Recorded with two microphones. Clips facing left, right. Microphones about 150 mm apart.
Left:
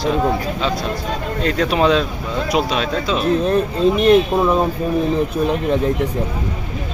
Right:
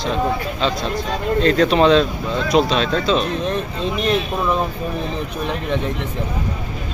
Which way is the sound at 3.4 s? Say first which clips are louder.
Left 7 dB; 40° left (ahead or behind).